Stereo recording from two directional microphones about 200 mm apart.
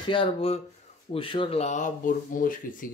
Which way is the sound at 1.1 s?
25° left (ahead or behind).